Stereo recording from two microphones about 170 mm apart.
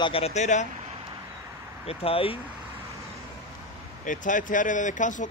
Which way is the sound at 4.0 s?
50° left (ahead or behind).